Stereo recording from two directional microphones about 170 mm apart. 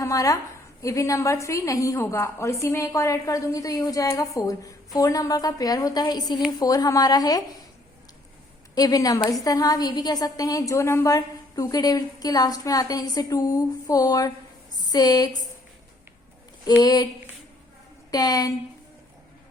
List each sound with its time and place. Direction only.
0.0 s a woman's voice: 20° left (ahead or behind)
8.7 s a woman's voice: 20° left (ahead or behind)
16.6 s a woman's voice: 25° left (ahead or behind)
18.1 s a woman's voice: 20° left (ahead or behind)